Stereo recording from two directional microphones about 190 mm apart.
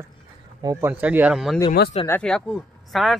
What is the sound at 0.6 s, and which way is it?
Speech, 15° right (ahead or behind).